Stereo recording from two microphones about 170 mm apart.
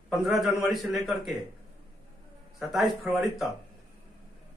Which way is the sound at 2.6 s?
Centre (ahead or behind).